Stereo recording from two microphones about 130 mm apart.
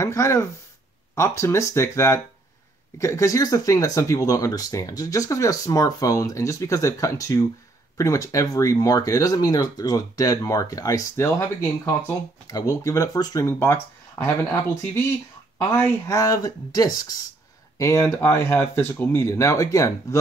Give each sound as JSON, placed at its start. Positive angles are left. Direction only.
{"t": 0.0, "sound": "speech", "side_deg": 20}
{"t": 15.7, "sound": "speech", "side_deg": 20}